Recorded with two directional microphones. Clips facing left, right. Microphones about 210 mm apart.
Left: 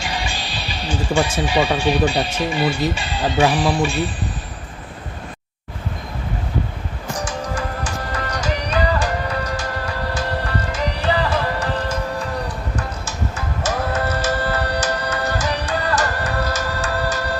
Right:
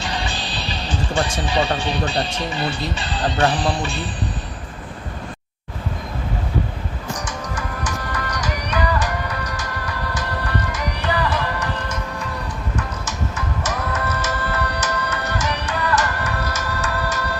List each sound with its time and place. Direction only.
0.0 s speech: 10° left (ahead or behind)
7.3 s music: 30° left (ahead or behind)